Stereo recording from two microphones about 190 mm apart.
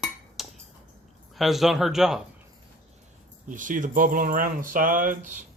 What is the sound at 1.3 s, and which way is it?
Speech, centre (ahead or behind).